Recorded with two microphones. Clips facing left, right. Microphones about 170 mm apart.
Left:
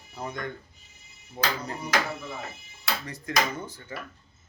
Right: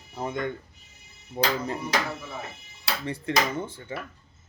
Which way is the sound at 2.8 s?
30° right (ahead or behind).